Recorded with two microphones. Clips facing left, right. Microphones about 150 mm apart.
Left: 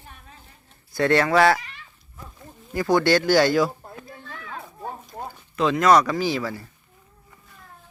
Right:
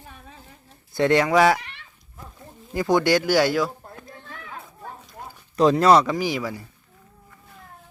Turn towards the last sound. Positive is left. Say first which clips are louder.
# left 1 dB
turn(degrees=-15)  # may be behind; listen again after turning